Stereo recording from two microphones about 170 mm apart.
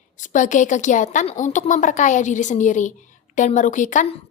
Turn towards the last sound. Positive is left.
turn(degrees=45)  # may be behind; listen again after turning